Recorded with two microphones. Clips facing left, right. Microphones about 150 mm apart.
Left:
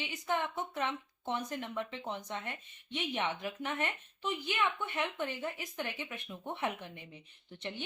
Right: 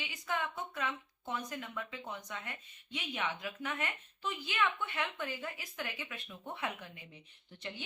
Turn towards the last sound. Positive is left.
turn(degrees=20)  # may be behind; listen again after turning